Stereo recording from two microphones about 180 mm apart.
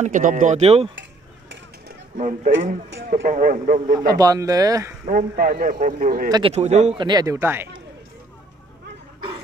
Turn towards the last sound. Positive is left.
turn(degrees=-15)  # may be behind; listen again after turning